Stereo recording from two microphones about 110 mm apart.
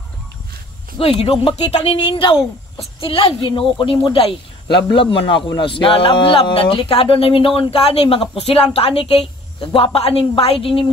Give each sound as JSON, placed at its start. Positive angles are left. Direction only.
{"t": 0.9, "sound": "speech", "side_deg": 55}
{"t": 2.0, "sound": "a woman's voice", "side_deg": 50}